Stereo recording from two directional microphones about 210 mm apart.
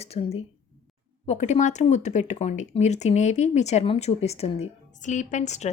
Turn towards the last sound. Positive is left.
turn(degrees=35)  # may be behind; listen again after turning